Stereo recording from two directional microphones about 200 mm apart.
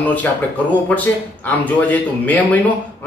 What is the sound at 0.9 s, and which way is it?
A man's voice, 10° left (ahead or behind).